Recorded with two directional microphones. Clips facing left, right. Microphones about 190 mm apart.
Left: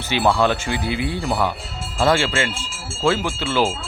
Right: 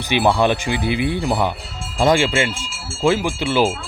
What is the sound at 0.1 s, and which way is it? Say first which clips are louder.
Speech: right 2 dB; 15° right (ahead or behind).